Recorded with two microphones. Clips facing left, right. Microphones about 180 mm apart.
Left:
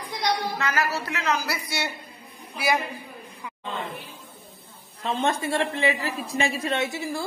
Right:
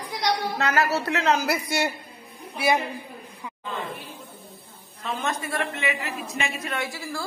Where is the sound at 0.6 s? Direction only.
65° right (ahead or behind).